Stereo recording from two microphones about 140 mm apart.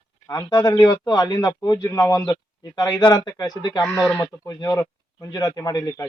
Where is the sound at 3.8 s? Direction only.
5° left (ahead or behind).